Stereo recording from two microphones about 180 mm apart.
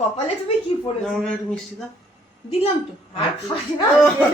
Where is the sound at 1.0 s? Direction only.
5° left (ahead or behind).